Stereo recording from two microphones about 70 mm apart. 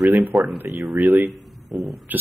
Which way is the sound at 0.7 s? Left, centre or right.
Right.